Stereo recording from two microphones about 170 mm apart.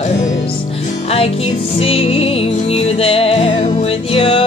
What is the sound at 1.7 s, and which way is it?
Music, 35° left (ahead or behind).